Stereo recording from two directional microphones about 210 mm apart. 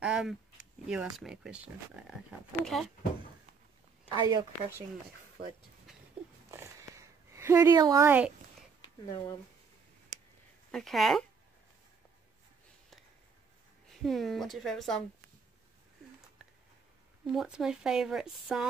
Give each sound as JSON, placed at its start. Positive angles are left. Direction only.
{"t": 0.0, "sound": "a sound", "side_deg": -5}
{"t": 1.1, "sound": "speech", "side_deg": -5}
{"t": 4.1, "sound": "a woman's voice", "side_deg": -20}
{"t": 6.5, "sound": "a sound", "side_deg": -15}
{"t": 9.0, "sound": "speech", "side_deg": 15}
{"t": 10.7, "sound": "speech", "side_deg": 0}
{"t": 13.8, "sound": "speech", "side_deg": 0}
{"t": 17.3, "sound": "speech", "side_deg": 0}